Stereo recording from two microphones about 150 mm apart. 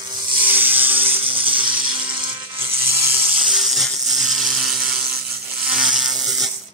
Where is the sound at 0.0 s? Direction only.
30° right (ahead or behind).